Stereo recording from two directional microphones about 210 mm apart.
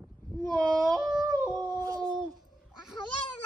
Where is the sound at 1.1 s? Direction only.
20° right (ahead or behind).